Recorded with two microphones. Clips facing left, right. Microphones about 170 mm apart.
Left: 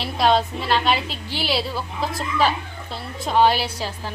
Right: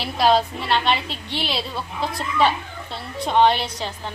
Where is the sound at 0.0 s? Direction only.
Centre (ahead or behind).